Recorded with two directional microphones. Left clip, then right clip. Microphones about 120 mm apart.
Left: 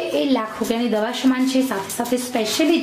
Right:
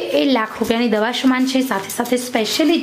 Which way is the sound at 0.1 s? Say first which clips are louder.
Right 6 dB; 40° right (ahead or behind).